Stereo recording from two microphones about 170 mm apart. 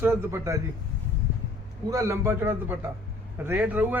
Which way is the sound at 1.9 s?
20° right (ahead or behind).